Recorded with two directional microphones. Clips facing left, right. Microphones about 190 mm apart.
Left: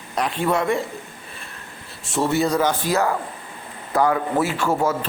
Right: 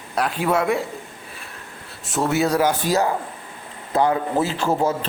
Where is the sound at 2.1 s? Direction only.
5° right (ahead or behind).